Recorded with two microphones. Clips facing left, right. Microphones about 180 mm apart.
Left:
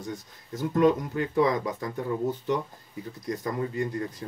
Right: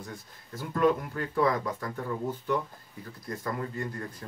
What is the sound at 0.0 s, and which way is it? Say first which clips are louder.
Speech: left 6 dB; 20° left (ahead or behind).